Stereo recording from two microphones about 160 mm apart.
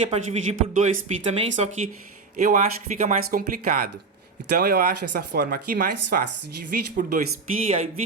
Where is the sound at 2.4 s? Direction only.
55° right (ahead or behind).